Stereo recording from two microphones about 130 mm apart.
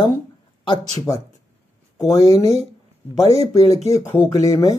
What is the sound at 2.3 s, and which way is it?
Speech, 55° right (ahead or behind).